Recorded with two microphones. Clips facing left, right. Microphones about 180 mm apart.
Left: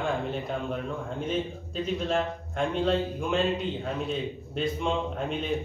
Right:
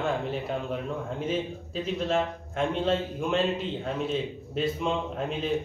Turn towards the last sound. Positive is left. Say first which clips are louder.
# even
turn(degrees=0)  # may be behind; listen again after turning